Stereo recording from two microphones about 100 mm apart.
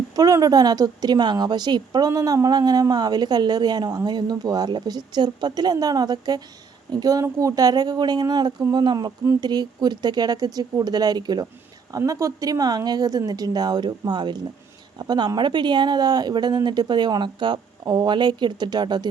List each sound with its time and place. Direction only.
0.2 s a woman's voice: 40° right (ahead or behind)
11.9 s a woman's voice: 30° right (ahead or behind)